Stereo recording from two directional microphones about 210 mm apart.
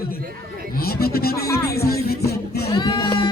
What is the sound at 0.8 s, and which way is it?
Speech, 45° left (ahead or behind).